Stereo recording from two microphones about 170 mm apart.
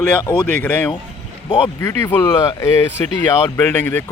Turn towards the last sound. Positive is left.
turn(degrees=10)  # may be behind; listen again after turning